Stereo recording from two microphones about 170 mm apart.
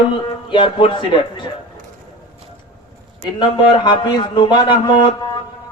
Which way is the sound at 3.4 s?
30° left (ahead or behind).